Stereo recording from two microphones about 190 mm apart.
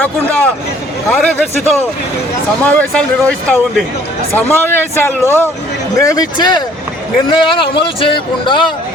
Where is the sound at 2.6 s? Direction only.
10° left (ahead or behind); by 8.6 s 25° left (ahead or behind).